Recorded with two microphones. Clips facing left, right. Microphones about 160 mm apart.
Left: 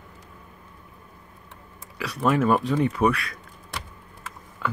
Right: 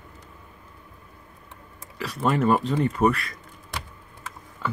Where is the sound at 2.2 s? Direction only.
5° left (ahead or behind).